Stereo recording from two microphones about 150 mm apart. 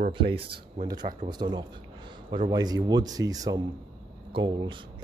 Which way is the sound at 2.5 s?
25° right (ahead or behind).